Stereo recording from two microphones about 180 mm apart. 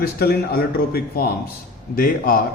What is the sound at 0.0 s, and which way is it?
A man's voice, 60° left (ahead or behind).